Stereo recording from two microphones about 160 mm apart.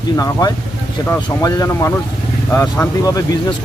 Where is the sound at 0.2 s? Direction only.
20° left (ahead or behind).